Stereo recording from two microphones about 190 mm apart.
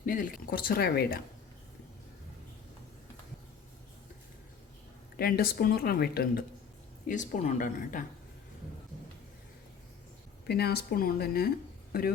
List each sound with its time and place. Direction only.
0.0 s speech: 45° left (ahead or behind)
5.1 s speech: 50° left (ahead or behind)
7.1 s speech: 40° left (ahead or behind)
10.4 s speech: 55° left (ahead or behind)